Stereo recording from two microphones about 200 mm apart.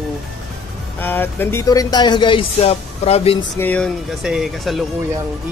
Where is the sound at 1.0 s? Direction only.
10° left (ahead or behind); by 3.3 s 30° left (ahead or behind).